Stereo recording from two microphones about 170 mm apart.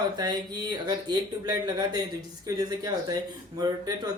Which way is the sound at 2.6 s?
20° right (ahead or behind).